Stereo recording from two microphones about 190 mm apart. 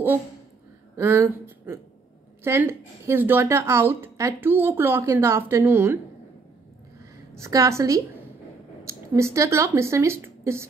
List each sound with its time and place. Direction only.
0.9 s a woman's voice: 15° right (ahead or behind)
7.3 s a woman's voice: 15° right (ahead or behind)